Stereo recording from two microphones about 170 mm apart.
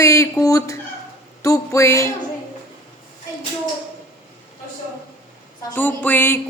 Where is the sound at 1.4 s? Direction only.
20° left (ahead or behind).